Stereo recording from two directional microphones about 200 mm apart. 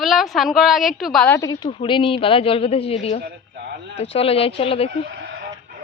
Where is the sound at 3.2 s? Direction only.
50° right (ahead or behind).